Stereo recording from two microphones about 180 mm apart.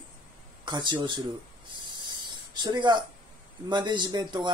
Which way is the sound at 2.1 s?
25° right (ahead or behind).